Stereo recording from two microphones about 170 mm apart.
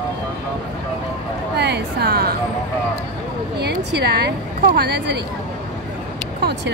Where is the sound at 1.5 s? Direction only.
75° right (ahead or behind).